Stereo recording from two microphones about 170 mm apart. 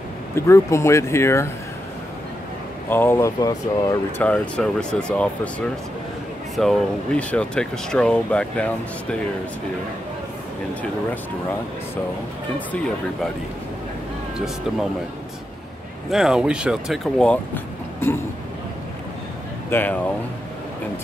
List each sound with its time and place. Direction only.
0.5 s speech: 15° left (ahead or behind)
2.9 s speech: 15° left (ahead or behind)
4.2 s speech: 5° left (ahead or behind)
6.5 s speech: centre (ahead or behind)
16.1 s speech: 5° right (ahead or behind)
19.7 s speech: 10° left (ahead or behind)